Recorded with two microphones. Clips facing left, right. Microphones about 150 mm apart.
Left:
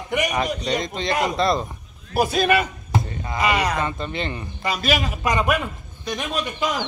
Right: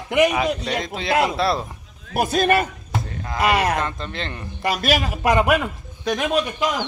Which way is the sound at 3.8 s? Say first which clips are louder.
Left 1 dB; 5° left (ahead or behind).